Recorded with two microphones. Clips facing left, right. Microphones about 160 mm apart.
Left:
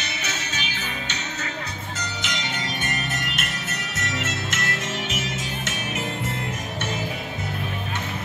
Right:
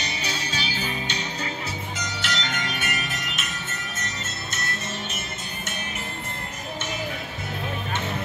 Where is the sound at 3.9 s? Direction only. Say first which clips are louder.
Left 6 dB; 90° left.